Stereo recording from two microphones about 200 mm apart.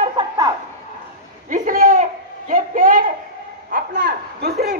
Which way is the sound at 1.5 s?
45° right (ahead or behind).